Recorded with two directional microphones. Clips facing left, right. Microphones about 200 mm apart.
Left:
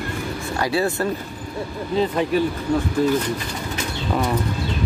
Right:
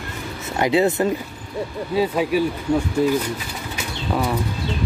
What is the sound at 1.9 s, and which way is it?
Speech, 5° right (ahead or behind).